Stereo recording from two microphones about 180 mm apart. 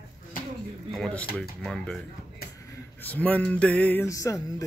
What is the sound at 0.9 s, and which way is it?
Speech, 5° left (ahead or behind).